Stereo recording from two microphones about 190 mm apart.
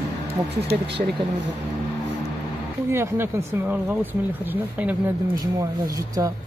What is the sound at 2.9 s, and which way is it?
Speech, 15° right (ahead or behind).